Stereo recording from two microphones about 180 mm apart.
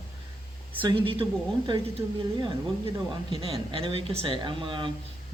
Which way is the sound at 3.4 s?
30° right (ahead or behind).